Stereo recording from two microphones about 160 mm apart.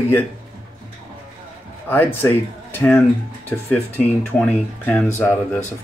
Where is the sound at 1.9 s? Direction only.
15° left (ahead or behind).